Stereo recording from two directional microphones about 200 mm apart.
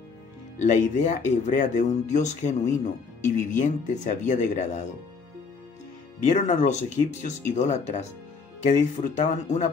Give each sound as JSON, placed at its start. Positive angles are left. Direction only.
{"t": 0.6, "sound": "speech", "side_deg": 35}
{"t": 6.2, "sound": "speech", "side_deg": 35}